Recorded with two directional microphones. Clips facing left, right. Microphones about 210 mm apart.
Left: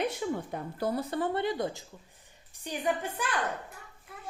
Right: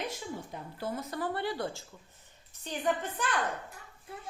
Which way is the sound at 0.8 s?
35° left (ahead or behind).